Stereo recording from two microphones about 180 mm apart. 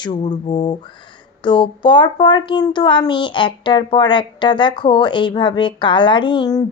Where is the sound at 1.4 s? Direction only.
25° left (ahead or behind).